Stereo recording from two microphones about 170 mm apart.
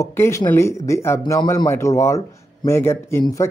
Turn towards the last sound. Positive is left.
turn(degrees=15)  # may be behind; listen again after turning